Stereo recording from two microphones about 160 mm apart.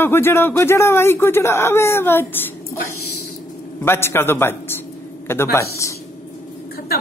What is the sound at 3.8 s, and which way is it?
A man's voice, 15° left (ahead or behind).